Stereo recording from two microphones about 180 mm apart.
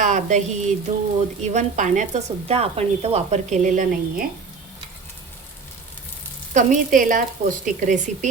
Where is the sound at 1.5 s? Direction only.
45° right (ahead or behind).